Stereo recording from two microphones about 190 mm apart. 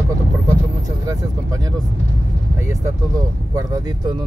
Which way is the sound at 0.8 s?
20° right (ahead or behind).